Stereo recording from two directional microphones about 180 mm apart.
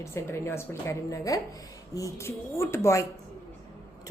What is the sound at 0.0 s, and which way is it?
A woman's voice, 15° left (ahead or behind).